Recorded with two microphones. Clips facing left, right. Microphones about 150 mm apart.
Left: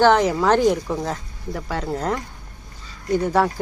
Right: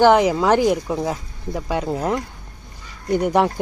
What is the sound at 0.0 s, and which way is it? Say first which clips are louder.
Speech: right 2 dB; 15° right (ahead or behind).